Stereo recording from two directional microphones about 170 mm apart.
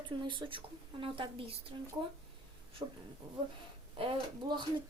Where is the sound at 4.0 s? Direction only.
30° right (ahead or behind).